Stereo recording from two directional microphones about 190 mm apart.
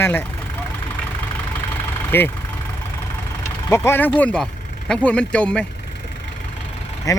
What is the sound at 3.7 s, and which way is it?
Speech, 15° left (ahead or behind).